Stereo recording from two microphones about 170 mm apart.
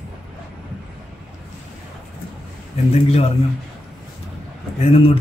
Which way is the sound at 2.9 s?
35° left (ahead or behind).